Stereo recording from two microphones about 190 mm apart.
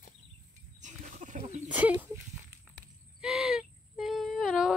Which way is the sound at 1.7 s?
10° right (ahead or behind).